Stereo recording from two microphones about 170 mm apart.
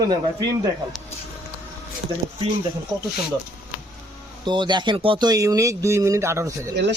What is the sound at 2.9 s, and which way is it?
Speech, 25° right (ahead or behind).